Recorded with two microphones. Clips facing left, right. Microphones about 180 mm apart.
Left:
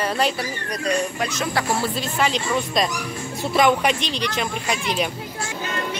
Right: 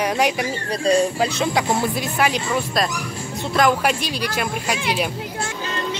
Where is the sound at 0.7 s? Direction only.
30° right (ahead or behind).